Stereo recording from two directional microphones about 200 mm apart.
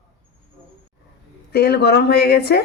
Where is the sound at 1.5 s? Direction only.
55° left (ahead or behind).